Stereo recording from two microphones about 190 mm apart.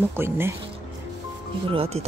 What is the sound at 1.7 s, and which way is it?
Speech, 30° right (ahead or behind).